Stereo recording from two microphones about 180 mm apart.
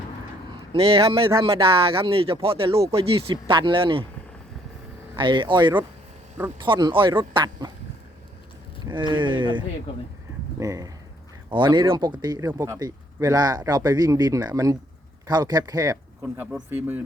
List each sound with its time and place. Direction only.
0.7 s speech: 30° right (ahead or behind)
5.1 s speech: 25° right (ahead or behind)
8.9 s speech: 25° right (ahead or behind)
16.2 s speech: 5° right (ahead or behind)